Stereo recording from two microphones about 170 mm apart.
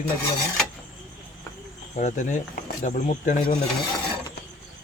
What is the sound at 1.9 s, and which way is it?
Speech, 45° left (ahead or behind).